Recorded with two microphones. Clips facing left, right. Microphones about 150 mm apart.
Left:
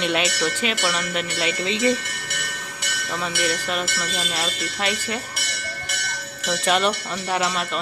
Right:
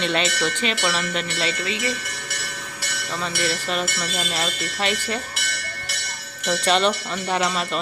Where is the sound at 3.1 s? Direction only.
10° left (ahead or behind).